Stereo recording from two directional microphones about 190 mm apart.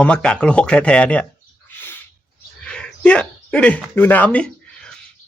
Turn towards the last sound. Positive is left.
turn(degrees=5)  # may be behind; listen again after turning